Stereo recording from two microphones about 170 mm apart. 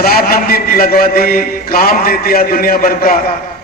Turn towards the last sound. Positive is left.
turn(degrees=55)  # may be behind; listen again after turning